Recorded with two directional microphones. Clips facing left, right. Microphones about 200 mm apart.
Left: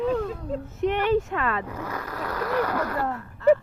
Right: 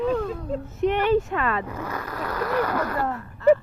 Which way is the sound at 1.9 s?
90° right.